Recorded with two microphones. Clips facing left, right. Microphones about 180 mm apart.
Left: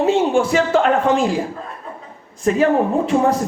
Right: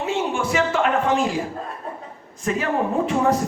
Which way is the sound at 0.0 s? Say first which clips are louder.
Left 8 dB; 35° left (ahead or behind).